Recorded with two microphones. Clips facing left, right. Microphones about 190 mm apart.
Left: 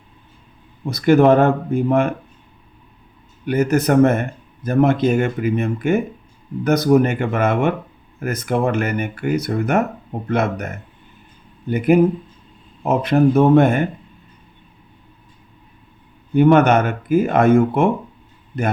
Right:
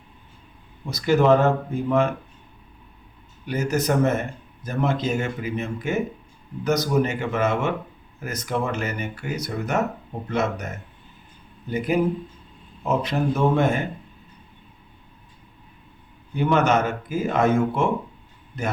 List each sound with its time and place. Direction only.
0.9 s speech: 55° left (ahead or behind)
3.4 s speech: 60° left (ahead or behind)
12.8 s speech: 55° left (ahead or behind)
16.3 s speech: 60° left (ahead or behind)